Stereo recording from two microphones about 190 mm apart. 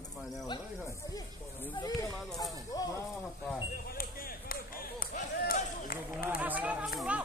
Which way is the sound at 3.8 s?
50° left (ahead or behind).